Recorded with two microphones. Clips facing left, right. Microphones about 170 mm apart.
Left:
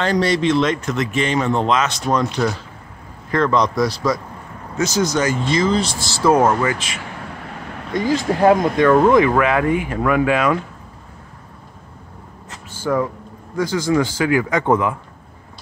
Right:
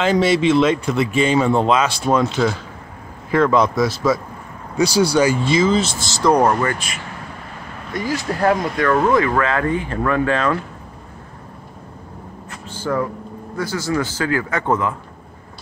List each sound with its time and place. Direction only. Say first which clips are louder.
0.0 s speech: right 2 dB; 5° right (ahead or behind)
7.9 s speech: left 4 dB; 20° left (ahead or behind)
12.8 s speech: left 2 dB; 15° left (ahead or behind)